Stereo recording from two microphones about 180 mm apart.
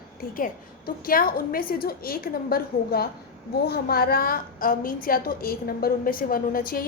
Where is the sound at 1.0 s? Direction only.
55° left (ahead or behind).